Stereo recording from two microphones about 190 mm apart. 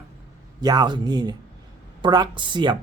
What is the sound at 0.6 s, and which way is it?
Speech, 20° right (ahead or behind).